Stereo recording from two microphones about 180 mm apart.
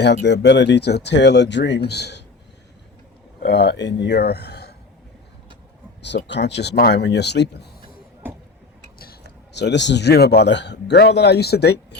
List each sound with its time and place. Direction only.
0.0 s speech: 70° left (ahead or behind)
3.4 s speech: 65° left (ahead or behind)
6.1 s speech: 75° left (ahead or behind)
9.5 s speech: 70° left (ahead or behind)